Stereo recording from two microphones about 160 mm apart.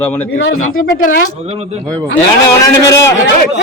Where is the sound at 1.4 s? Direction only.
40° right (ahead or behind).